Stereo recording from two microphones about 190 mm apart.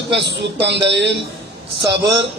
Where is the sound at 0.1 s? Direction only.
65° right (ahead or behind).